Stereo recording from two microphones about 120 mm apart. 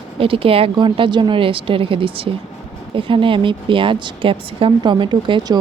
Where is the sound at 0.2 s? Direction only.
50° right (ahead or behind).